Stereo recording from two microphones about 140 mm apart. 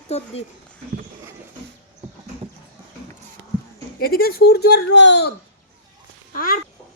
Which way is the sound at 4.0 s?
90° left.